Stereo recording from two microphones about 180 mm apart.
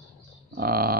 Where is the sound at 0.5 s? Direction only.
55° right (ahead or behind).